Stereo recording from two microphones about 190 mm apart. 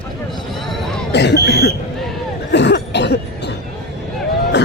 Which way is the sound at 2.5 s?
65° left (ahead or behind).